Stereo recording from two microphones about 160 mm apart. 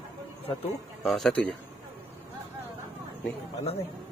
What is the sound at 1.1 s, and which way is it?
Speech, centre (ahead or behind).